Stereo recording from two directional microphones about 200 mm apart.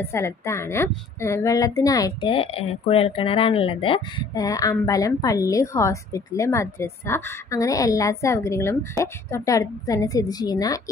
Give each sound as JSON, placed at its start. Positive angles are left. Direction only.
{"t": 0.0, "sound": "a woman's voice", "side_deg": 15}